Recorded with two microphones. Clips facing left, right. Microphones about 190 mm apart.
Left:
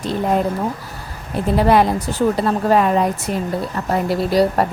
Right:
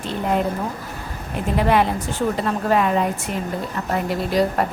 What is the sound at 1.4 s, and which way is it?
A woman's voice, 35° left (ahead or behind).